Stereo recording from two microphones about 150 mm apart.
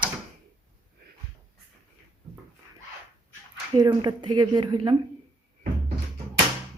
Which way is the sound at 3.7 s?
30° right (ahead or behind).